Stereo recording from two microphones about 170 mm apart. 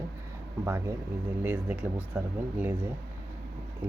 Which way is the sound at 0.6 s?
15° right (ahead or behind).